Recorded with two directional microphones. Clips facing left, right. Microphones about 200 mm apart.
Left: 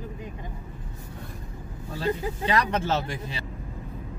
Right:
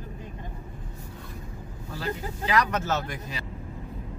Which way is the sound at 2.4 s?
30° left (ahead or behind).